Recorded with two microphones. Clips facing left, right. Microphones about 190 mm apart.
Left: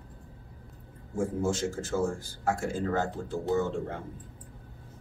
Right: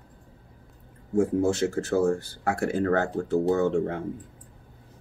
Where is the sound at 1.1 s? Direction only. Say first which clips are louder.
Right 7 dB; 65° right (ahead or behind).